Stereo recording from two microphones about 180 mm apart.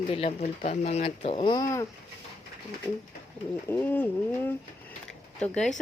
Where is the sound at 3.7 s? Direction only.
10° left (ahead or behind).